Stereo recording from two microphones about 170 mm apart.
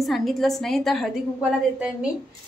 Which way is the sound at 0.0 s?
Centre (ahead or behind).